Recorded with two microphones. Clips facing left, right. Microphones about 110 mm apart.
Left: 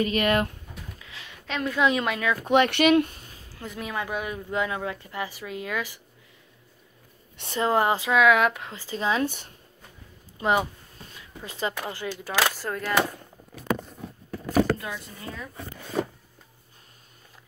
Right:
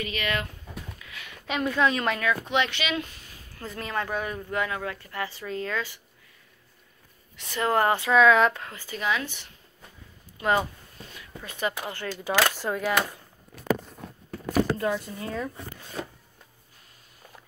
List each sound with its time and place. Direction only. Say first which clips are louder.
0.0 s speech: left 7 dB; 45° left (ahead or behind)
1.5 s a woman's voice: right 1 dB; 5° right (ahead or behind)
1.8 s speech: left 2 dB; 15° left (ahead or behind)
2.4 s speech: left 7 dB; 50° left (ahead or behind)
3.5 s speech: right 1 dB; 10° left (ahead or behind)
7.4 s a woman's voice: left 1 dB; 25° left (ahead or behind); by 8.6 s 10° left (ahead or behind)
8.6 s a woman's voice: left 2 dB; 30° left (ahead or behind)
9.2 s speech: left 9 dB; 45° left (ahead or behind)
10.4 s speech: left 1 dB; 15° left (ahead or behind)
11.4 s a woman's voice: even; 25° left (ahead or behind)
11.9 s speech: right 2 dB; 10° left (ahead or behind)
12.6 s speech: right 3 dB; 5° right (ahead or behind)
14.8 s speech: right 8 dB; 40° right (ahead or behind)